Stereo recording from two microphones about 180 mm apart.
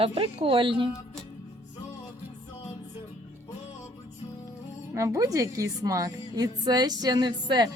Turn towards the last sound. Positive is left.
turn(degrees=-25)  # may be behind; listen again after turning